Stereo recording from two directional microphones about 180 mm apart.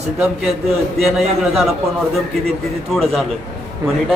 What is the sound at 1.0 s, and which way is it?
Speech, centre (ahead or behind).